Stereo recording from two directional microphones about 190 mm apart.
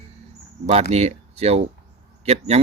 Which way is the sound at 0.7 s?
35° right (ahead or behind).